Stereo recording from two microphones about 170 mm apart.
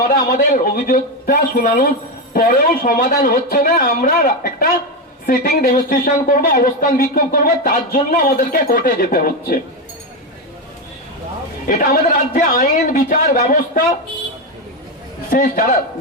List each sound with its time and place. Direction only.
0.1 s speech: 50° left (ahead or behind)
11.7 s a man's voice: 55° left (ahead or behind)
15.3 s a man's voice: 55° left (ahead or behind)